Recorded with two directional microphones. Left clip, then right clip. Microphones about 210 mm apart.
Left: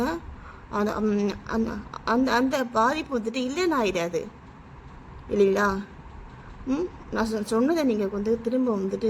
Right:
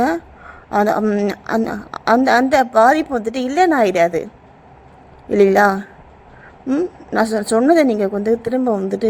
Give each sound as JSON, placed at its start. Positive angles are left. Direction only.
{"t": 0.7, "sound": "a woman's voice", "side_deg": -20}
{"t": 1.3, "sound": "a woman's voice", "side_deg": -20}
{"t": 5.3, "sound": "a woman's voice", "side_deg": -20}
{"t": 7.1, "sound": "a woman's voice", "side_deg": -20}